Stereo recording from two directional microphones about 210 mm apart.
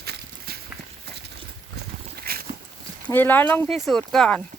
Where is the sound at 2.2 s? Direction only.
45° right (ahead or behind).